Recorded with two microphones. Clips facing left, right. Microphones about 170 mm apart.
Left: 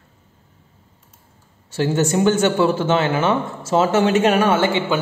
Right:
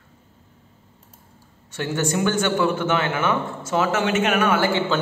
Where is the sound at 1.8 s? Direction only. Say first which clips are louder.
Left 5 dB; 25° left (ahead or behind).